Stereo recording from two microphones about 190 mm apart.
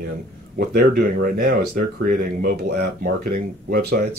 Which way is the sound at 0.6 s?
55° right (ahead or behind).